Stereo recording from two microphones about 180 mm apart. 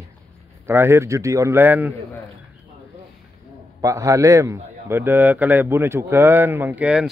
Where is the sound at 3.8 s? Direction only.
15° right (ahead or behind).